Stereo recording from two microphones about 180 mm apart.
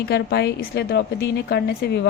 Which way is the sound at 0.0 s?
65° left (ahead or behind).